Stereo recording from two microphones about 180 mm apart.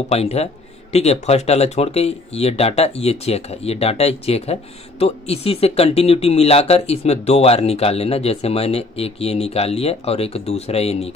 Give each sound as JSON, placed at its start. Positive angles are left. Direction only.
{"t": 0.1, "sound": "speech", "side_deg": 35}